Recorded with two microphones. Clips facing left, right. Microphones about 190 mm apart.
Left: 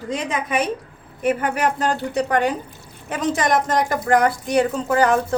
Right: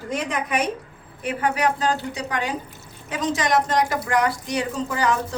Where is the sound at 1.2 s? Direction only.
50° left (ahead or behind).